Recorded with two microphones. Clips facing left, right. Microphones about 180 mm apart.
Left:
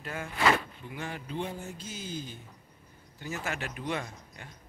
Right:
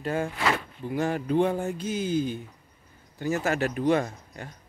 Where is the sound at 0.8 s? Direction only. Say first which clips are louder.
Right 12 dB; 45° right (ahead or behind); by 2.3 s 60° right (ahead or behind).